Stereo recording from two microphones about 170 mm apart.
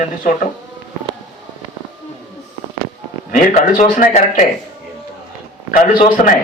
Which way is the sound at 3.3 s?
55° left (ahead or behind).